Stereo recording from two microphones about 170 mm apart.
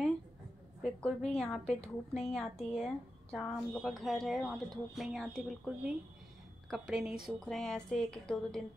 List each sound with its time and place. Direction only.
0.8 s a woman's voice: 5° left (ahead or behind)